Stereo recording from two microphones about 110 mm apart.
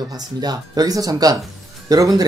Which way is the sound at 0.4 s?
35° right (ahead or behind).